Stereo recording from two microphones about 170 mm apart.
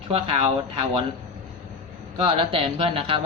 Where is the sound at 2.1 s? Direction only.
30° right (ahead or behind).